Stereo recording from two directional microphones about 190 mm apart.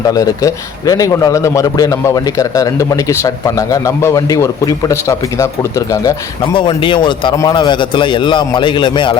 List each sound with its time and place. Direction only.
0.0 s a man's voice: 20° left (ahead or behind)